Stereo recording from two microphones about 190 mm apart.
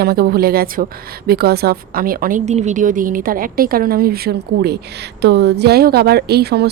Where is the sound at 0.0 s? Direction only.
55° right (ahead or behind).